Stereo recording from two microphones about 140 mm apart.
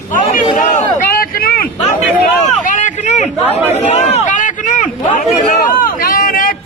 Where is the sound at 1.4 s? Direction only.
90° left.